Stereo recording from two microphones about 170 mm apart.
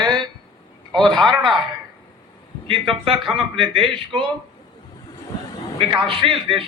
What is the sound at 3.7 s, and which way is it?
Speech, 30° right (ahead or behind).